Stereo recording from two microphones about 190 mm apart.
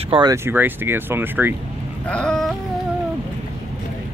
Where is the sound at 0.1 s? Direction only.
20° right (ahead or behind).